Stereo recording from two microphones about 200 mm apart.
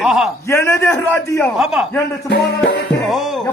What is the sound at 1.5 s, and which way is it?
Speech, 5° right (ahead or behind).